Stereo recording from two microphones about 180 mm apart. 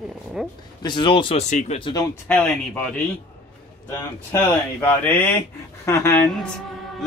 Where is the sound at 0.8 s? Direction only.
25° left (ahead or behind).